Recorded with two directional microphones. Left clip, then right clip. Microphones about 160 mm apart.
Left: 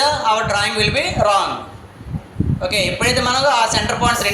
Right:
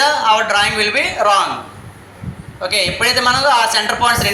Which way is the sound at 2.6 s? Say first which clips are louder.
Right 2 dB; 40° left (ahead or behind).